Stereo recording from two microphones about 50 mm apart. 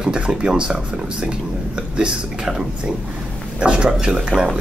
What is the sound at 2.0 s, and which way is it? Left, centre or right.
Speech, centre.